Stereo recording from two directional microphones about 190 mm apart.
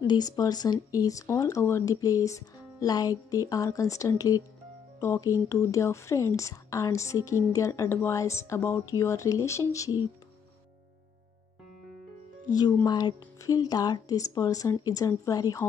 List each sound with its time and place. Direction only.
0.0 s speech: 20° left (ahead or behind)
12.5 s speech: 20° left (ahead or behind)